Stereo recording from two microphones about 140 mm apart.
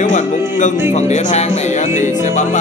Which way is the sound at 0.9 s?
55° left (ahead or behind).